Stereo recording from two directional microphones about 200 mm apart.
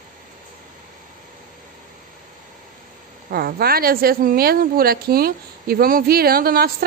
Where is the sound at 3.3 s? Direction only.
50° right (ahead or behind).